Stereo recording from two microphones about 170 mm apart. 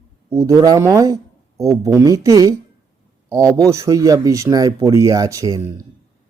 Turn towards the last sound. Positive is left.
turn(degrees=-20)  # may be behind; listen again after turning